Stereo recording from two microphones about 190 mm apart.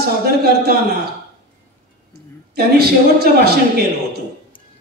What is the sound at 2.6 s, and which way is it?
Speech, 55° right (ahead or behind).